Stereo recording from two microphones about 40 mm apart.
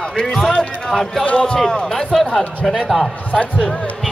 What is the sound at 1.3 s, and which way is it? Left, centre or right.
Speech, left.